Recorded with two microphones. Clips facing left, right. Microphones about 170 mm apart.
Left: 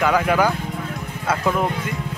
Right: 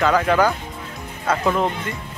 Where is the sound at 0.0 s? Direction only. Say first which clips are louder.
Right 1 dB; 10° left (ahead or behind).